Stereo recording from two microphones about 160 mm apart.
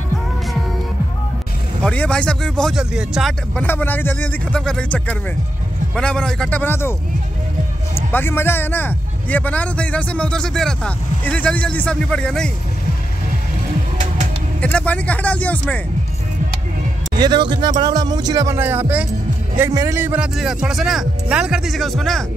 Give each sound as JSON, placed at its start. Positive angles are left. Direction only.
{"t": 1.9, "sound": "speech", "side_deg": 5}
{"t": 3.6, "sound": "a man's voice", "side_deg": 10}
{"t": 8.1, "sound": "a man's voice", "side_deg": 15}
{"t": 14.6, "sound": "a man's voice", "side_deg": 5}
{"t": 17.1, "sound": "speech", "side_deg": -25}